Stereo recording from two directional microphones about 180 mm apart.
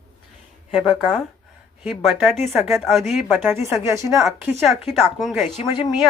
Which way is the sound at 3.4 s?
15° right (ahead or behind).